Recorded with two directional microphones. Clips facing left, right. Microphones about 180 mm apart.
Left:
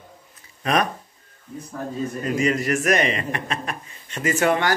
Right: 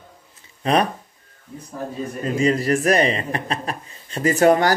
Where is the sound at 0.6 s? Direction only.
30° right (ahead or behind).